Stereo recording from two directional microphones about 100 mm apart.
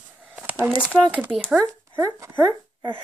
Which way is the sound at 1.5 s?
25° right (ahead or behind).